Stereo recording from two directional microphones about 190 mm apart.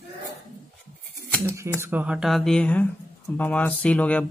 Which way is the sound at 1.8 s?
10° right (ahead or behind).